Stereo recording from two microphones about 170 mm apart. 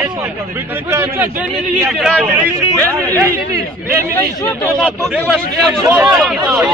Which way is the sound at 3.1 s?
20° right (ahead or behind).